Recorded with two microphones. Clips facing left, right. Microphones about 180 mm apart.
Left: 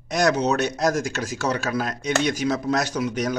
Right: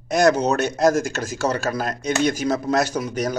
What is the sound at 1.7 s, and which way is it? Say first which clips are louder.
Speech: even; 45° right (ahead or behind).